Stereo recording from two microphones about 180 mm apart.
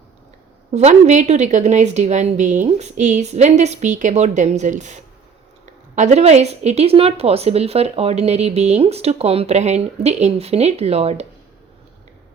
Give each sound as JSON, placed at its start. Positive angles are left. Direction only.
{"t": 0.7, "sound": "a woman's voice", "side_deg": -40}
{"t": 6.0, "sound": "a woman's voice", "side_deg": -40}